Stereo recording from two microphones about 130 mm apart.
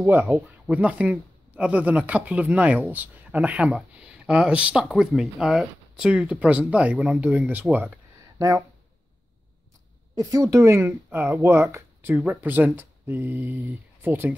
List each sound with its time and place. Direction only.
0.0 s speech: 20° right (ahead or behind)
8.4 s speech: 25° right (ahead or behind)
10.1 s speech: 25° right (ahead or behind)